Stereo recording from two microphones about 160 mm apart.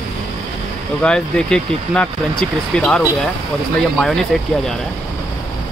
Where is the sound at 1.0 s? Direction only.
5° left (ahead or behind).